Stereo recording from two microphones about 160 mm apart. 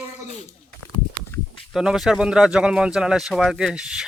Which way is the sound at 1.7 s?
5° right (ahead or behind).